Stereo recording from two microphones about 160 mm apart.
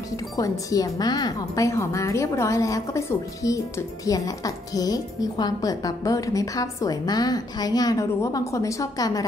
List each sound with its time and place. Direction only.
0.4 s a woman's voice: 20° left (ahead or behind)